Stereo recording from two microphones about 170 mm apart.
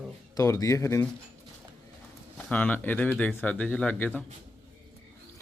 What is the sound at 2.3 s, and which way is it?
Speech, 10° left (ahead or behind).